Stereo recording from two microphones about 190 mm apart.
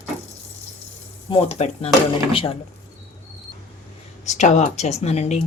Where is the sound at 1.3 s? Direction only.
30° left (ahead or behind).